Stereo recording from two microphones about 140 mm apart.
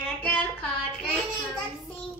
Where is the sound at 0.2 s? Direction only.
10° left (ahead or behind).